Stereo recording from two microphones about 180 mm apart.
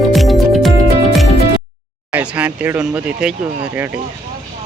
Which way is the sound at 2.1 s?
5° right (ahead or behind).